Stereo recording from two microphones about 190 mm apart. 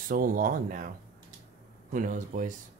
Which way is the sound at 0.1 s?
45° right (ahead or behind).